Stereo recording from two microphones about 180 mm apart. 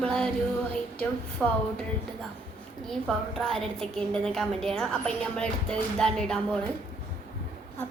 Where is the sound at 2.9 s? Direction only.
5° left (ahead or behind).